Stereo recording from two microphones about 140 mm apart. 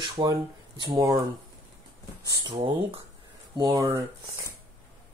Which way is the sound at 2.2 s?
35° right (ahead or behind).